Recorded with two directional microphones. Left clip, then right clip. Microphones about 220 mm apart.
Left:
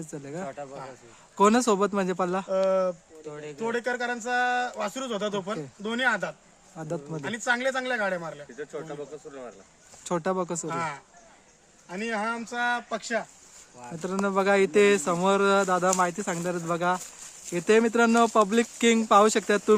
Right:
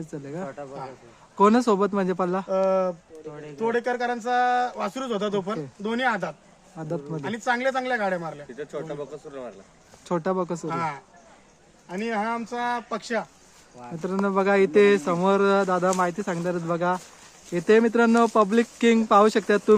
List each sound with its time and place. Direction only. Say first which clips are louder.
0.1 s speech: right 1 dB; 10° left (ahead or behind)
0.4 s speech: right 1 dB; 50° left (ahead or behind)
1.4 s speech: right 2 dB; 10° left (ahead or behind)
2.5 s speech: right 2 dB; 5° right (ahead or behind)
3.2 s speech: left 1 dB; 50° left (ahead or behind)
3.6 s speech: right 4 dB; 5° right (ahead or behind)
6.7 s speech: right 2 dB; 10° left (ahead or behind)
7.2 s speech: right 1 dB; 5° right (ahead or behind)
8.5 s speech: right 5 dB; 50° right (ahead or behind)
10.0 s speech: right 2 dB; 10° left (ahead or behind)
10.7 s speech: right 3 dB; 5° right (ahead or behind)
13.0 s speech: right 2 dB; 20° right (ahead or behind)
14.0 s speech: right 2 dB; 10° left (ahead or behind)